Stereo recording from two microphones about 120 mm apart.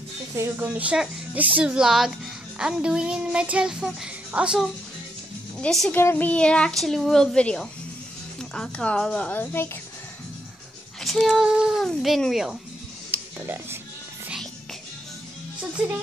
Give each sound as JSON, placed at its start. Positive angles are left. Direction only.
{"t": 0.4, "sound": "speech", "side_deg": -15}
{"t": 5.6, "sound": "a woman's voice", "side_deg": 5}
{"t": 5.9, "sound": "speech", "side_deg": 15}
{"t": 11.0, "sound": "speech", "side_deg": 0}
{"t": 13.1, "sound": "a sound", "side_deg": -15}